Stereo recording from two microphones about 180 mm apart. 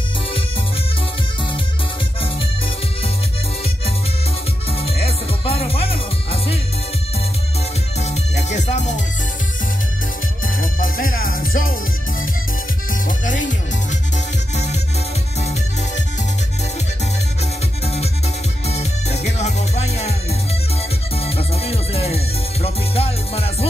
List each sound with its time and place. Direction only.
4.8 s music: 35° left (ahead or behind)
8.0 s music: 40° left (ahead or behind)
10.4 s music: 50° left (ahead or behind)
13.2 s music: 45° left (ahead or behind)
17.8 s music: 35° left (ahead or behind)